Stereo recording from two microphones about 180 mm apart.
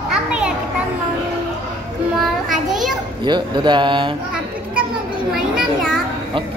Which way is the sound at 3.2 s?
25° right (ahead or behind).